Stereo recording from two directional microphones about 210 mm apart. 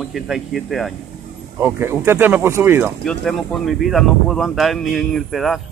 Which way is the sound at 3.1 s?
Centre (ahead or behind).